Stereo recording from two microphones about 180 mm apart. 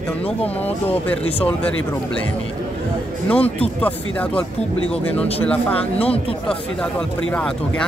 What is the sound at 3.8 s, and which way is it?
Speech, 10° left (ahead or behind).